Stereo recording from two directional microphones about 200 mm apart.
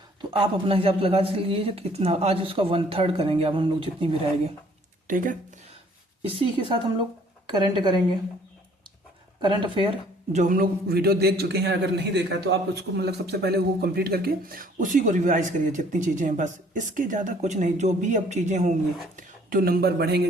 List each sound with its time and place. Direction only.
0.2 s speech: 25° right (ahead or behind)
5.0 s a man's voice: 40° right (ahead or behind)
6.2 s speech: 25° right (ahead or behind)
9.4 s speech: 25° right (ahead or behind)
10.3 s a man's voice: 40° right (ahead or behind)